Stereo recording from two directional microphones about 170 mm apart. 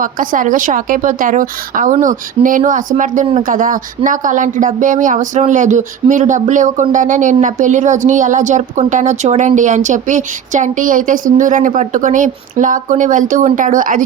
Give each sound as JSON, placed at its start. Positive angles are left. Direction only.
{"t": 0.0, "sound": "speech", "side_deg": -55}